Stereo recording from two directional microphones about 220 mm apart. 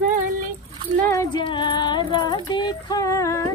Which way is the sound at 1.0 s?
15° left (ahead or behind).